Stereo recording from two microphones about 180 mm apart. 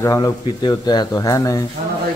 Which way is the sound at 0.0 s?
20° left (ahead or behind).